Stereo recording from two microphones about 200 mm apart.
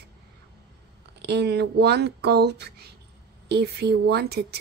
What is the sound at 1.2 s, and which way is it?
A woman's voice, 55° right (ahead or behind).